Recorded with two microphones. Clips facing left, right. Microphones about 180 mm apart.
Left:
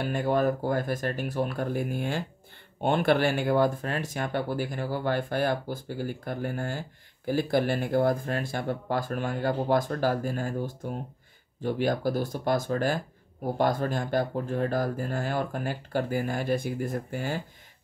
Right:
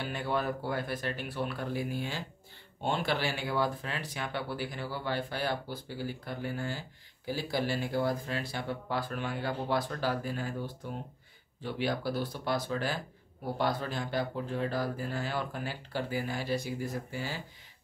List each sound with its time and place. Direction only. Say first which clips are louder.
0.0 s speech: left 7 dB; 45° left (ahead or behind)